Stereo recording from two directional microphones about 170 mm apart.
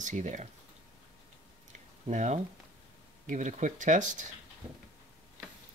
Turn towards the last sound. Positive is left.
turn(degrees=-45)  # may be behind; listen again after turning